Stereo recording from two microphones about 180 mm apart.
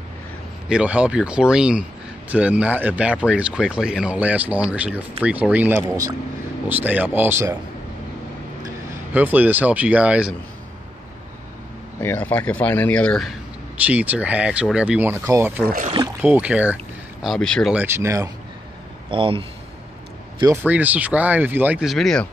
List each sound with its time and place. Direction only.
0.7 s speech: 5° right (ahead or behind)
9.1 s speech: 10° right (ahead or behind)
12.0 s speech: 10° left (ahead or behind); by 15.6 s 15° right (ahead or behind)
15.6 s speech: 50° right (ahead or behind)
16.2 s speech: 10° right (ahead or behind)
17.8 s speech: 15° right (ahead or behind)
19.0 s a man's voice: 30° right (ahead or behind)
20.6 s speech: 10° right (ahead or behind)